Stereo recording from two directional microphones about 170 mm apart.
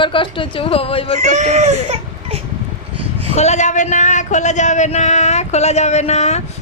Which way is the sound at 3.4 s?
40° left (ahead or behind).